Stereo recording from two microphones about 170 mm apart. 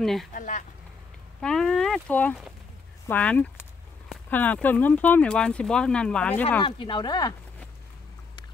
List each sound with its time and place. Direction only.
0.0 s speech: centre (ahead or behind)
0.3 s a sound: 50° left (ahead or behind)
1.4 s speech: 5° left (ahead or behind)
6.6 s speech: 30° left (ahead or behind)